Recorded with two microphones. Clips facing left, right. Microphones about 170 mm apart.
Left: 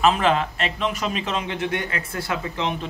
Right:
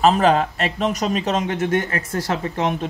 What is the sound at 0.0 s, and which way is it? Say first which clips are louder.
A man's voice: right 4 dB; 40° right (ahead or behind).